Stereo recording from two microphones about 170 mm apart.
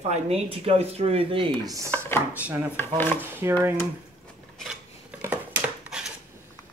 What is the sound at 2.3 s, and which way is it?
Speech, 10° right (ahead or behind).